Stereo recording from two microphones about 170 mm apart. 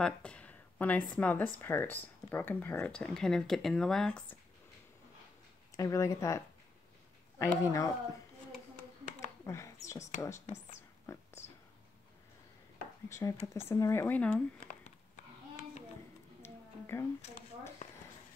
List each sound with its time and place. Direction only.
0.0 s a sound: 5° left (ahead or behind)
1.1 s speech: 10° left (ahead or behind)
5.8 s speech: 20° left (ahead or behind)
9.5 s speech: 20° left (ahead or behind)
11.1 s a sound: 15° left (ahead or behind)
13.1 s speech: 20° left (ahead or behind)
16.4 s music: 15° left (ahead or behind)